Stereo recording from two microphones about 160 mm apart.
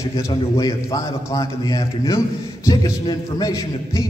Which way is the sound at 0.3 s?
20° left (ahead or behind).